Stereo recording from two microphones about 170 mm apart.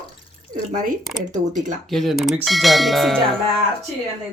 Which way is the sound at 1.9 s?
Centre (ahead or behind).